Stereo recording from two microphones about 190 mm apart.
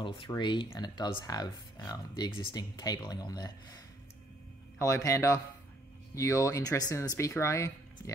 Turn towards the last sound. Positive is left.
turn(degrees=15)  # may be behind; listen again after turning